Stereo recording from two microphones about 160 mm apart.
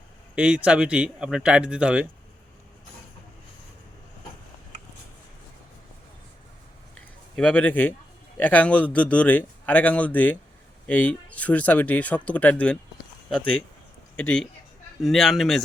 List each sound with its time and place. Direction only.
0.3 s speech: 5° right (ahead or behind)
6.9 s a sound: 10° left (ahead or behind)
8.4 s speech: 10° left (ahead or behind)
14.2 s a man's voice: 5° left (ahead or behind)